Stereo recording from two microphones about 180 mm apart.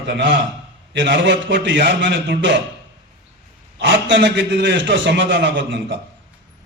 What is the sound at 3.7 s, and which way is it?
A man's voice, 80° right.